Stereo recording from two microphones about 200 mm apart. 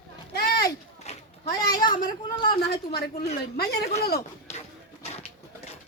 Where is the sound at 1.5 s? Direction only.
20° left (ahead or behind).